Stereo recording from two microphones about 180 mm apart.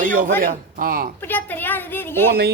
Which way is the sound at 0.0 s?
50° right (ahead or behind).